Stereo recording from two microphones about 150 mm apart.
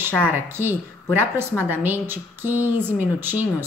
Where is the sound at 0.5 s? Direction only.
15° right (ahead or behind).